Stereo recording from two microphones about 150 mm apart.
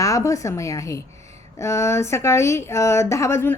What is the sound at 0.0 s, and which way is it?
A woman's voice, 20° left (ahead or behind).